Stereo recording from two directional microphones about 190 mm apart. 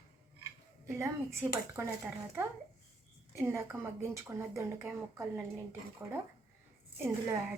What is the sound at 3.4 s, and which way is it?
A woman's voice, 10° right (ahead or behind).